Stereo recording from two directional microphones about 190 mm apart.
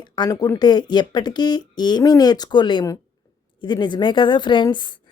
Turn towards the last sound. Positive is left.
turn(degrees=25)  # may be behind; listen again after turning